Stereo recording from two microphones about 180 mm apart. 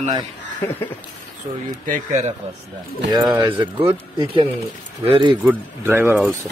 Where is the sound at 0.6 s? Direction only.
10° left (ahead or behind).